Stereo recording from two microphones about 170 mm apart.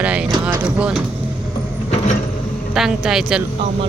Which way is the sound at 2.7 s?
5° right (ahead or behind).